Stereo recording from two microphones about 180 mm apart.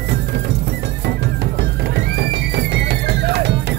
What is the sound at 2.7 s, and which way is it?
Music, 70° right (ahead or behind).